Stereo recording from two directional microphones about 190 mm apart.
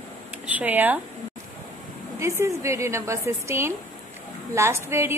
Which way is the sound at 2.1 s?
15° right (ahead or behind).